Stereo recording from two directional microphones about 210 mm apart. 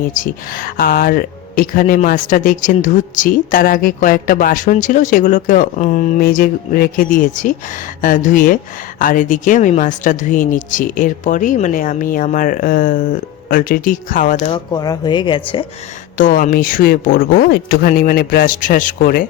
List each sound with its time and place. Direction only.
0.1 s speech: 40° left (ahead or behind)
14.5 s speech: 20° left (ahead or behind)
16.1 s speech: 40° left (ahead or behind)